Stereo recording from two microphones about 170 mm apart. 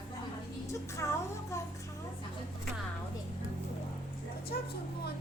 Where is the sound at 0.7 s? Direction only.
15° left (ahead or behind).